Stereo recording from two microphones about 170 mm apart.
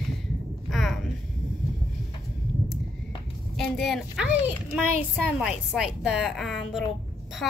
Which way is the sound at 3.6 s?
Centre (ahead or behind).